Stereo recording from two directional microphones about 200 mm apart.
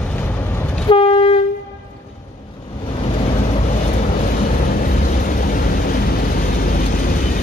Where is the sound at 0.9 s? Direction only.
25° left (ahead or behind).